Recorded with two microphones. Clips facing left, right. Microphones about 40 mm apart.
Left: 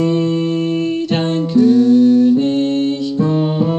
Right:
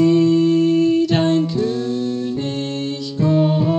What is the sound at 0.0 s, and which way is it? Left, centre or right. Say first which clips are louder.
Music: right 2 dB; left.